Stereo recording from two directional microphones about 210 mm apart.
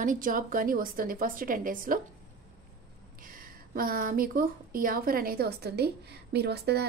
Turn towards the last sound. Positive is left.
turn(degrees=-50)  # may be behind; listen again after turning